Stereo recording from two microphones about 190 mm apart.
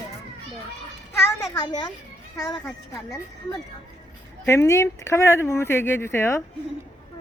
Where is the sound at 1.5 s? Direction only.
20° left (ahead or behind).